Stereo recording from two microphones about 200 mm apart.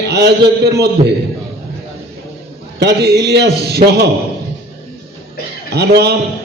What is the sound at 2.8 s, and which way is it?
A man's voice, 55° right (ahead or behind).